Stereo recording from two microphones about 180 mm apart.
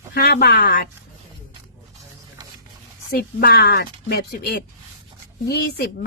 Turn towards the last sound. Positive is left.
turn(degrees=60)  # may be behind; listen again after turning